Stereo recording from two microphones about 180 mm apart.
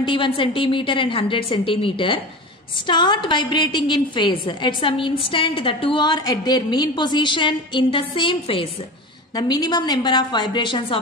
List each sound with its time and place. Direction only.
0.0 s a woman's voice: 25° left (ahead or behind)